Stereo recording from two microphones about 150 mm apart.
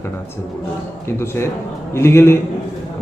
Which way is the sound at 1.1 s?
15° left (ahead or behind).